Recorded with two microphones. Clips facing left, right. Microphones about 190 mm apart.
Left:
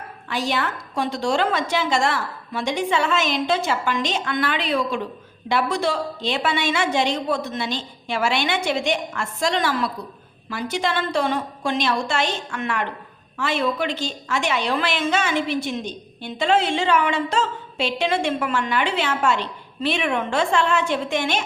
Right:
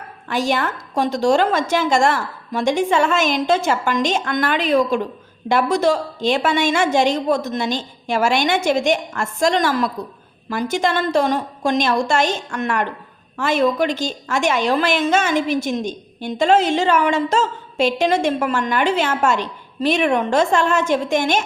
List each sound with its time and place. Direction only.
0.3 s a woman's voice: 45° right (ahead or behind)